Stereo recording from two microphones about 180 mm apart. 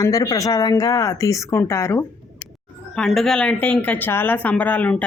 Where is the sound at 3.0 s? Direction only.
Centre (ahead or behind).